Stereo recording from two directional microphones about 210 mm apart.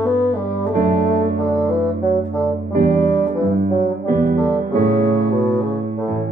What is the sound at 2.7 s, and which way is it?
Music, 40° right (ahead or behind).